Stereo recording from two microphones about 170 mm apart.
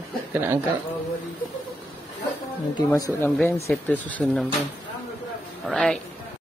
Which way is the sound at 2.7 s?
20° left (ahead or behind).